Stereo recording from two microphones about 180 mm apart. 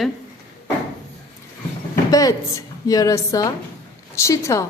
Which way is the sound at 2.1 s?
20° left (ahead or behind).